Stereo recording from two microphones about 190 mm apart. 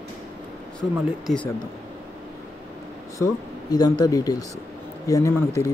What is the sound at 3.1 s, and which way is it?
Speech, 20° left (ahead or behind).